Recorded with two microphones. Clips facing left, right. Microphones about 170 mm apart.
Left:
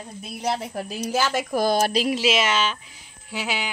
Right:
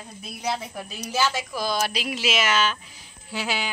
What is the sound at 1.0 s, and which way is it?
Speech, 50° left (ahead or behind).